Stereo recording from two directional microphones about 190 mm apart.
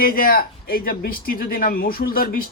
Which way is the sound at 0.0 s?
50° left (ahead or behind).